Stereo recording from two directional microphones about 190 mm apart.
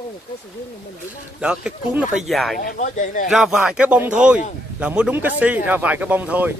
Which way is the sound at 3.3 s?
5° right (ahead or behind).